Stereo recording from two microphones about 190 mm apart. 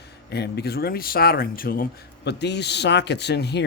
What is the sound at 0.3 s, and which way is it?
Speech, 60° left (ahead or behind).